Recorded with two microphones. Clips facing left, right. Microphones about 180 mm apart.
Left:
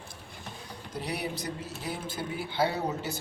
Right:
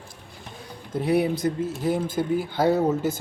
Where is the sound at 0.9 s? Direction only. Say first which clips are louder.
Right 12 dB; 50° right (ahead or behind).